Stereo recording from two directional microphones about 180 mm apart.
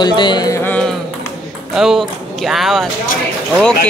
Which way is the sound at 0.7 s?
5° left (ahead or behind).